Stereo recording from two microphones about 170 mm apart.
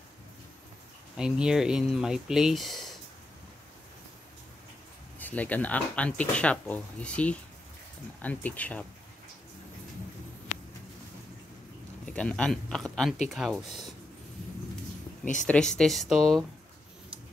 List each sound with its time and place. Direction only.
1.1 s speech: 5° right (ahead or behind)
5.2 s speech: 10° left (ahead or behind)
12.1 s speech: 5° left (ahead or behind)
15.4 s speech: 5° left (ahead or behind)